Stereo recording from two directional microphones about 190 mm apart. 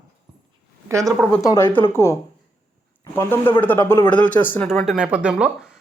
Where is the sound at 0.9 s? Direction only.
15° right (ahead or behind).